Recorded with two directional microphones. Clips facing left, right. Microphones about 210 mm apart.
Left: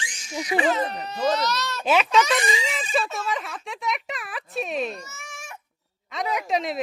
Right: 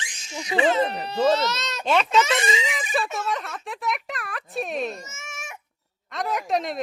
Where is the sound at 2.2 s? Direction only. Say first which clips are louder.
Even; 25° right (ahead or behind).